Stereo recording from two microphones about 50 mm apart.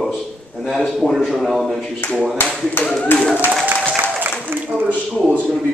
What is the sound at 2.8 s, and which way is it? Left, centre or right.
Speech, left.